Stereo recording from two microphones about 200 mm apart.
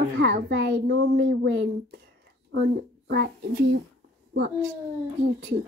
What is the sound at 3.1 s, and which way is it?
Speech, 50° right (ahead or behind).